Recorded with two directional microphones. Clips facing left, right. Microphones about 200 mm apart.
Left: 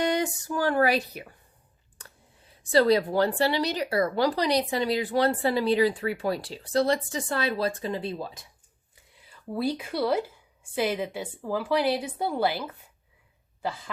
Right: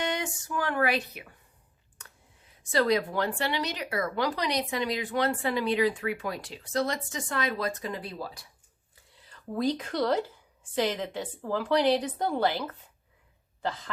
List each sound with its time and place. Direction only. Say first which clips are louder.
0.0 s speech: left 6 dB; 35° left (ahead or behind)
2.0 s a sound: left 3 dB; 35° left (ahead or behind)
2.7 s speech: left 5 dB; 35° left (ahead or behind)
9.1 s a woman's voice: left 1 dB; 10° left (ahead or behind)